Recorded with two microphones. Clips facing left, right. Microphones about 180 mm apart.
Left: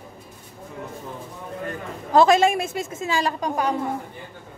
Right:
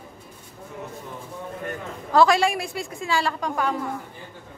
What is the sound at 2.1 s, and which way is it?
A woman's voice, 20° left (ahead or behind).